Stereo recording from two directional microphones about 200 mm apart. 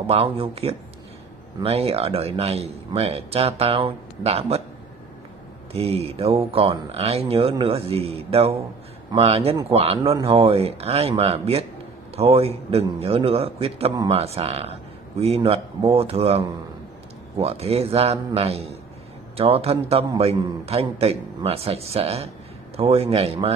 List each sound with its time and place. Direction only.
0.0 s a man's voice: 30° right (ahead or behind)
5.7 s a man's voice: 30° right (ahead or behind)